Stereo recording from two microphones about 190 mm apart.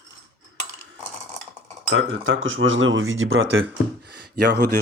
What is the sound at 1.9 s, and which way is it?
Speech, 90° right.